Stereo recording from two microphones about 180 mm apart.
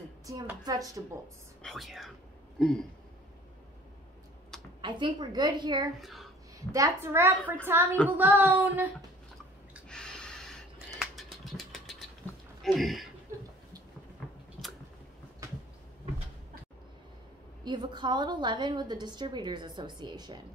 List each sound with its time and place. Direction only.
0.7 s a woman's voice: 20° right (ahead or behind)
1.6 s speech: centre (ahead or behind)
4.8 s a woman's voice: 25° right (ahead or behind)
5.9 s speech: centre (ahead or behind)
6.7 s a woman's voice: 15° right (ahead or behind)
9.8 s a sound: 5° left (ahead or behind)
12.6 s speech: centre (ahead or behind)
17.6 s a woman's voice: 25° right (ahead or behind)